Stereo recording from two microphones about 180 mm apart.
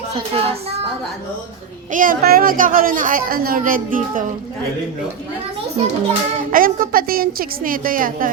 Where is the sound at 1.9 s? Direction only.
50° right (ahead or behind).